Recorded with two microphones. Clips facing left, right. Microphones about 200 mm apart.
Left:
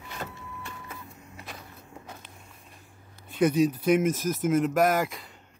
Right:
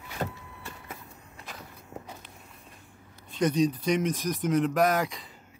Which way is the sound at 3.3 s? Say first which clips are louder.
Left 2 dB; 5° left (ahead or behind).